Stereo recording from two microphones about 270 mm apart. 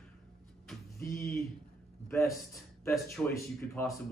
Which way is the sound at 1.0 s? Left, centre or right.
Left.